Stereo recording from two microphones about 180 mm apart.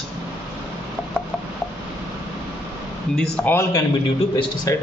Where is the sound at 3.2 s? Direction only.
15° left (ahead or behind).